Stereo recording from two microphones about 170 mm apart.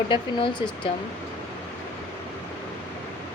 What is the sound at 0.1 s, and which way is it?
Speech, 30° left (ahead or behind).